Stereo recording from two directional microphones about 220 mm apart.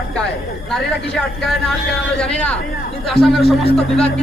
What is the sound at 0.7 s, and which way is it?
A man's voice, centre (ahead or behind).